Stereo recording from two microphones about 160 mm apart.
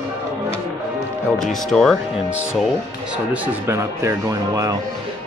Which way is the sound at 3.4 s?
15° right (ahead or behind).